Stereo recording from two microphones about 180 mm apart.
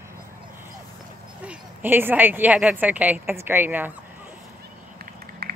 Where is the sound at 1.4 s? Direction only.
10° right (ahead or behind).